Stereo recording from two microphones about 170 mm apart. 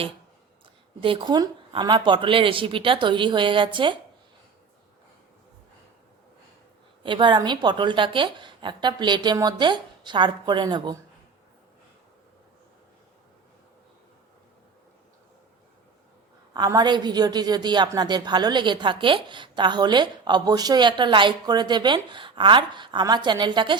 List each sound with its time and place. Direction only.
1.0 s a woman's voice: 30° right (ahead or behind)
7.0 s a woman's voice: 30° right (ahead or behind)
16.6 s a woman's voice: 25° right (ahead or behind)